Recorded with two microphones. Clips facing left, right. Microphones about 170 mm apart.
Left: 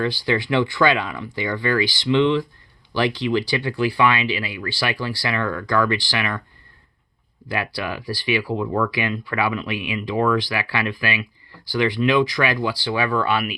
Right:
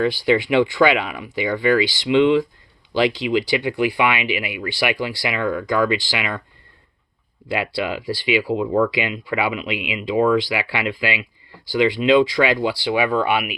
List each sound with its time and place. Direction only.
0.0 s speech: 20° right (ahead or behind)
7.4 s speech: 25° right (ahead or behind)
8.7 s speech: 30° right (ahead or behind)
9.0 s speech: 20° right (ahead or behind)